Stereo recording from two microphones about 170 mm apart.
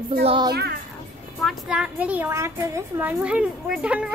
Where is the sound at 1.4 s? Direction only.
Centre (ahead or behind).